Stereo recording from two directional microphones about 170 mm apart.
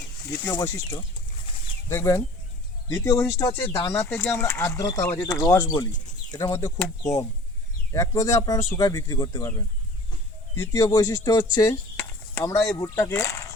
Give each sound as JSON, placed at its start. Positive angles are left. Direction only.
{"t": 1.9, "sound": "speech", "side_deg": 15}